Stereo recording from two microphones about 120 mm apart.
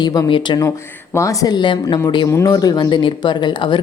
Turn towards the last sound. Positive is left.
turn(degrees=40)  # may be behind; listen again after turning